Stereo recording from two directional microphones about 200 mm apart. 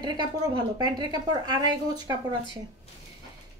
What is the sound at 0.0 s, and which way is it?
A woman's voice, 20° right (ahead or behind).